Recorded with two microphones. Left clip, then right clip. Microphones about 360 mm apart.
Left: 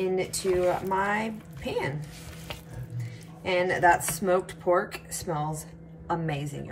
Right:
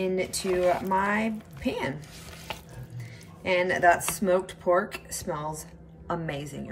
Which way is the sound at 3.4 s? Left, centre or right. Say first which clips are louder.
Right 1 dB; centre.